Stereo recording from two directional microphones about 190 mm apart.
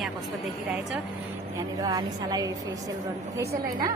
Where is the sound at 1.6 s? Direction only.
20° right (ahead or behind).